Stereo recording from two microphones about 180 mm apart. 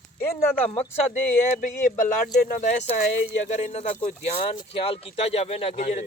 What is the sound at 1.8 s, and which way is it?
Speech, 50° left (ahead or behind).